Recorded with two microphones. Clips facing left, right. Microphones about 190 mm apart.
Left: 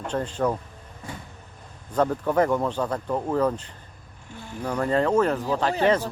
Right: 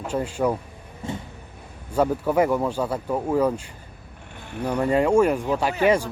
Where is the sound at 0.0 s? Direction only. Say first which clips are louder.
Right 2 dB; 10° right (ahead or behind).